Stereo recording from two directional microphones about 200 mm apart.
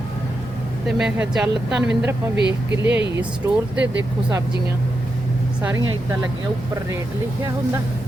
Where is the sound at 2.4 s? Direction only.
60° right (ahead or behind).